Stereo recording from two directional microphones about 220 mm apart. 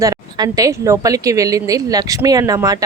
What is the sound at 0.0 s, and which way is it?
Speech, 15° right (ahead or behind).